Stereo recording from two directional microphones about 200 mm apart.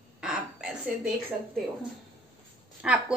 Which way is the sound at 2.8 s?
5° right (ahead or behind).